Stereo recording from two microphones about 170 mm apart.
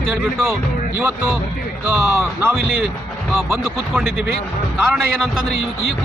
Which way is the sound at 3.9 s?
5° right (ahead or behind).